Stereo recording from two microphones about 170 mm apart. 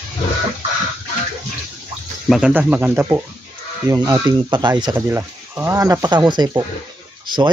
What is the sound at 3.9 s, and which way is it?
Speech, 25° right (ahead or behind).